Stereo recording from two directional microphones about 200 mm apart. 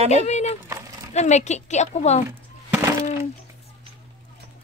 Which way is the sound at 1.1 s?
35° left (ahead or behind).